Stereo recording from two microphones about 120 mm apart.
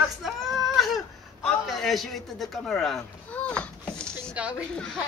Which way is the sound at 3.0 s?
10° left (ahead or behind).